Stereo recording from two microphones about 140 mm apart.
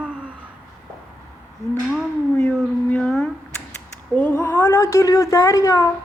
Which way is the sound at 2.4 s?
10° left (ahead or behind).